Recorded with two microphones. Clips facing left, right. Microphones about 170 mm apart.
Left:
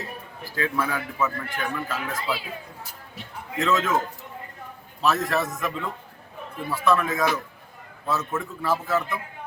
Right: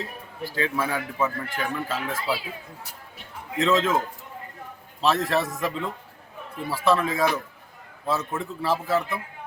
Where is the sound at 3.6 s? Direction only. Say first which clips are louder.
Right 2 dB; 30° right (ahead or behind).